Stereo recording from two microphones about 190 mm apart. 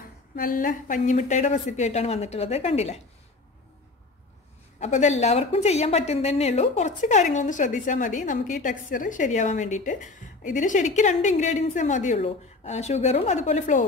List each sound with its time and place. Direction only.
0.4 s a woman's voice: 45° left (ahead or behind)
4.7 s a woman's voice: 40° left (ahead or behind)